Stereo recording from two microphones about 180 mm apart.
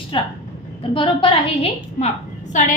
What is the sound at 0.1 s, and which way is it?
A woman's voice, 30° left (ahead or behind).